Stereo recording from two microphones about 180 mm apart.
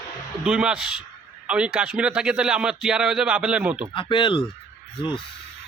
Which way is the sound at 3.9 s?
25° left (ahead or behind).